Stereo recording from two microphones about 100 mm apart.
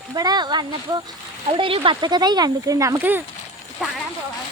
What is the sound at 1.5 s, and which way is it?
Speech, 60° right (ahead or behind).